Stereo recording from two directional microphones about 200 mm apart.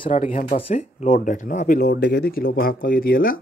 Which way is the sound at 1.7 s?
55° left (ahead or behind).